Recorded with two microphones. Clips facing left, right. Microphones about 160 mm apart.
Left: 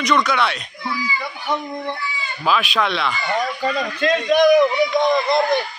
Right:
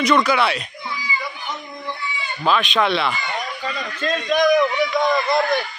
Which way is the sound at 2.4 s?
5° left (ahead or behind).